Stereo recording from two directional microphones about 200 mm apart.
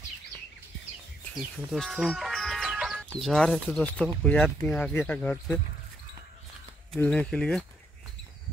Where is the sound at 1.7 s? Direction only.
Centre (ahead or behind).